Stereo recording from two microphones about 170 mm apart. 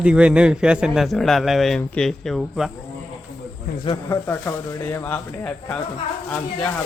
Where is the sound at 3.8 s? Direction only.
20° left (ahead or behind).